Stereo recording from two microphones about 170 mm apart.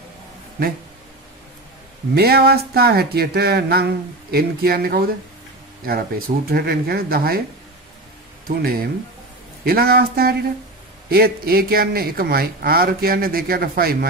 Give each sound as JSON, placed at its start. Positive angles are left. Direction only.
{"t": 2.1, "sound": "speech", "side_deg": -65}
{"t": 8.5, "sound": "speech", "side_deg": -60}